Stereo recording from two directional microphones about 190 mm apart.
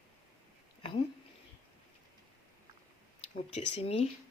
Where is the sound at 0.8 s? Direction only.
30° left (ahead or behind).